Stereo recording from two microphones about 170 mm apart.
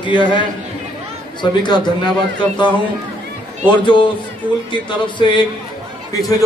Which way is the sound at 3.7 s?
30° left (ahead or behind).